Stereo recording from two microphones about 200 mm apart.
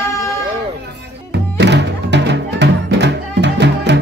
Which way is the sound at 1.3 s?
60° right (ahead or behind).